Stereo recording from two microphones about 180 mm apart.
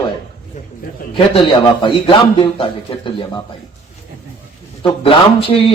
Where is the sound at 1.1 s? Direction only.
30° left (ahead or behind).